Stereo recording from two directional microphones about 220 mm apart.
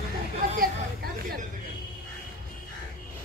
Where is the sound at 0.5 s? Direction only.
40° right (ahead or behind).